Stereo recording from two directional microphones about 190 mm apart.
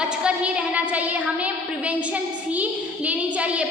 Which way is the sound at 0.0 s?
5° right (ahead or behind).